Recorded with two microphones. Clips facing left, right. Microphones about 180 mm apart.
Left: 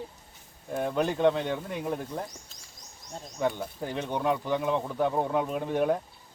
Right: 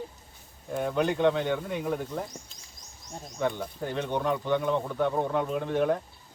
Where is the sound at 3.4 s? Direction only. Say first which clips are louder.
Even; 10° left (ahead or behind).